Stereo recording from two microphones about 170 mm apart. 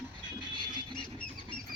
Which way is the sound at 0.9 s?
5° left (ahead or behind).